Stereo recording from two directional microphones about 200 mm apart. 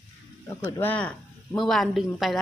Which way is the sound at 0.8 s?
5° left (ahead or behind).